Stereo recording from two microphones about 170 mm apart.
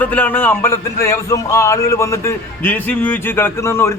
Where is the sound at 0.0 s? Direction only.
10° left (ahead or behind).